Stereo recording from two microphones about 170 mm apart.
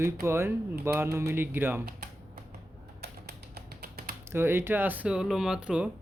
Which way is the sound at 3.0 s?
70° right (ahead or behind).